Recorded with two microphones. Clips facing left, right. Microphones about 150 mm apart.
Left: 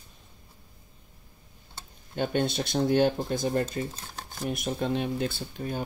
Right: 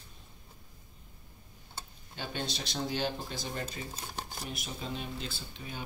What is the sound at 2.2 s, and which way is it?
Speech, 55° left (ahead or behind).